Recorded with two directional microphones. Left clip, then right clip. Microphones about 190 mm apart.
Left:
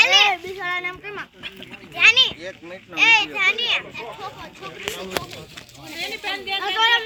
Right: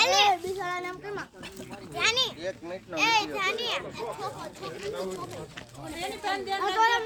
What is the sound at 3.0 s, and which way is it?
A child's voice, centre (ahead or behind).